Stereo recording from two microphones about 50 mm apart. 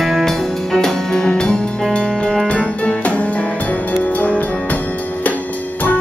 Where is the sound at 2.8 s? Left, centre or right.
Left.